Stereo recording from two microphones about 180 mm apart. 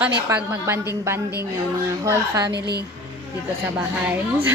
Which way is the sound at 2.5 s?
65° right (ahead or behind).